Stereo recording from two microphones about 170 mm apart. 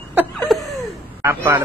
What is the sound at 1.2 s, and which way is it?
Speech, 15° right (ahead or behind).